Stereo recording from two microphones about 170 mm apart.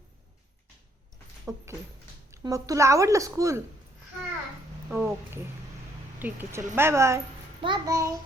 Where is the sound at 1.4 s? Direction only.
15° right (ahead or behind).